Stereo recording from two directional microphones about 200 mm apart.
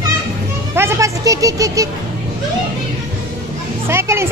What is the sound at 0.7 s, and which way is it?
Speech, 15° right (ahead or behind).